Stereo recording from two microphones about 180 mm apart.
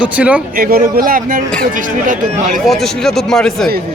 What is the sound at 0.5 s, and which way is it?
Speech, 55° right (ahead or behind).